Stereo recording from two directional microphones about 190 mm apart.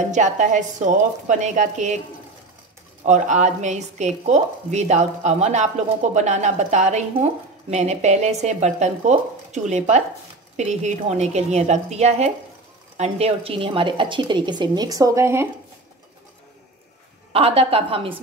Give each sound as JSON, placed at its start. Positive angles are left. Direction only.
{"t": 0.0, "sound": "a woman's voice", "side_deg": -40}
{"t": 3.1, "sound": "a woman's voice", "side_deg": -40}
{"t": 17.3, "sound": "a woman's voice", "side_deg": -30}